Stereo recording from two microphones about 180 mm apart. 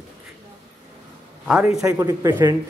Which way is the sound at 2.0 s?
20° right (ahead or behind).